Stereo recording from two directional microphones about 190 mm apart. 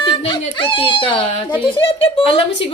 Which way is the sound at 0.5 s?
25° left (ahead or behind).